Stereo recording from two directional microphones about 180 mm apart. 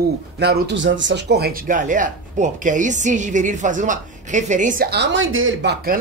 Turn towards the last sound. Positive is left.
turn(degrees=-70)  # may be behind; listen again after turning